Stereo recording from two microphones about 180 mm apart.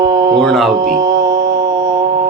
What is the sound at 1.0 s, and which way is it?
Mantra, 20° right (ahead or behind).